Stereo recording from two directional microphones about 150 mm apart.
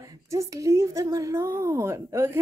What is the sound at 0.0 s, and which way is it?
Speech, 20° right (ahead or behind).